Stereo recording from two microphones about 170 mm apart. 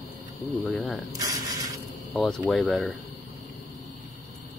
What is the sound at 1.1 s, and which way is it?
Speech, 20° right (ahead or behind).